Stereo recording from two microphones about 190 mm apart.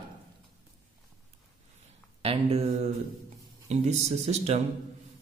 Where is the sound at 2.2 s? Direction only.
30° right (ahead or behind).